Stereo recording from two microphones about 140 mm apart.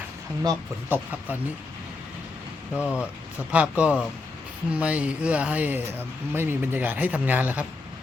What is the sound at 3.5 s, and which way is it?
Speech, 10° right (ahead or behind).